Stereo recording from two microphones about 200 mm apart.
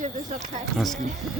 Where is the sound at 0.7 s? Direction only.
Centre (ahead or behind).